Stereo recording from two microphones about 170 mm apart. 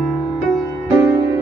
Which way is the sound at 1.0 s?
20° right (ahead or behind).